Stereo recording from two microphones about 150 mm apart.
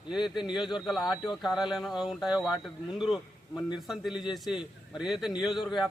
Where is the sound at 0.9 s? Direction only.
Centre (ahead or behind).